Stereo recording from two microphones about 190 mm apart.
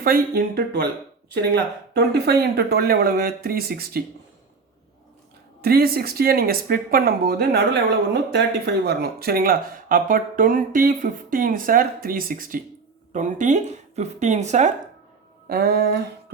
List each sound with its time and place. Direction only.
0.0 s speech: 55° right (ahead or behind)
1.9 s speech: 60° right (ahead or behind)
5.6 s speech: 55° right (ahead or behind); by 14.7 s 40° right (ahead or behind)
15.4 s speech: 55° right (ahead or behind)